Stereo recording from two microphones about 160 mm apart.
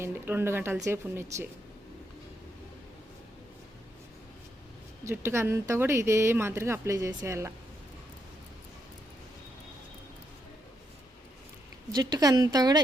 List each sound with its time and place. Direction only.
0.0 s speech: 15° right (ahead or behind)
5.0 s speech: 15° right (ahead or behind)
11.9 s speech: 25° right (ahead or behind)